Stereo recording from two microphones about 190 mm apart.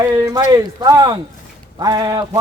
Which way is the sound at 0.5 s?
20° right (ahead or behind).